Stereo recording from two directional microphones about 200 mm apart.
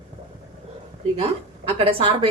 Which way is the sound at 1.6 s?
25° right (ahead or behind).